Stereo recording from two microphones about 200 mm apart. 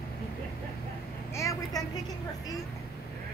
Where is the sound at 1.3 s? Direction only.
15° left (ahead or behind).